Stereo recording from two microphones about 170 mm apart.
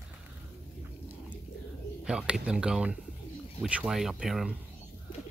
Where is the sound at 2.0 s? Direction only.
5° right (ahead or behind).